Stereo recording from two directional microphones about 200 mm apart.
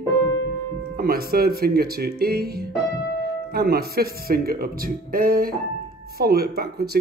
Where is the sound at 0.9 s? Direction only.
50° right (ahead or behind).